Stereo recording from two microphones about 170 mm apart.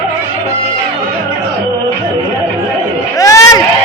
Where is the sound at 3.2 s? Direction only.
20° left (ahead or behind).